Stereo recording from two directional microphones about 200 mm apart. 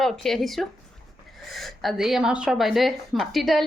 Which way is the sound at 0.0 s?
Centre (ahead or behind).